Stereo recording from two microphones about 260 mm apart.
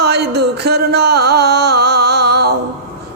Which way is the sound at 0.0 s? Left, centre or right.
Right.